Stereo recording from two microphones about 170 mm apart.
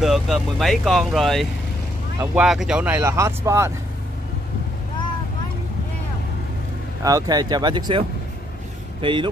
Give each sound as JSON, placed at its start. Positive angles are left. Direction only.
{"t": 0.0, "sound": "speech", "side_deg": 0}
{"t": 7.0, "sound": "speech", "side_deg": -20}
{"t": 9.0, "sound": "speech", "side_deg": -30}